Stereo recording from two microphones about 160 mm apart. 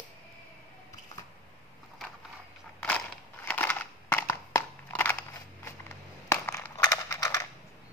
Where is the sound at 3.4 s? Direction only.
10° left (ahead or behind).